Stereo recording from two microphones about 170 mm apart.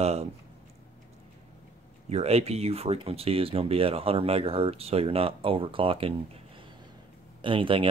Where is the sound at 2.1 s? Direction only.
40° right (ahead or behind).